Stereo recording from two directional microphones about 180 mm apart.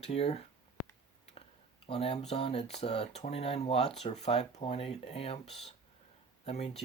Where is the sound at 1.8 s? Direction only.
30° left (ahead or behind).